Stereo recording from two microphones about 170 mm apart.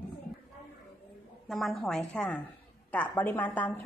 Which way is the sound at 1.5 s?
Centre (ahead or behind).